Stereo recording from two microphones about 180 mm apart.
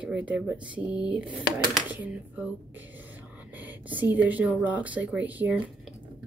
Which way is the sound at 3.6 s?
10° right (ahead or behind).